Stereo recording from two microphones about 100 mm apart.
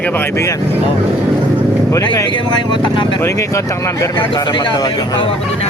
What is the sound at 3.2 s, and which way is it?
Speech, 30° left (ahead or behind).